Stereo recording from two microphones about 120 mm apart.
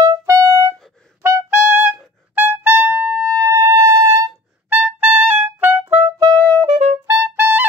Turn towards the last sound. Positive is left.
turn(degrees=-15)  # may be behind; listen again after turning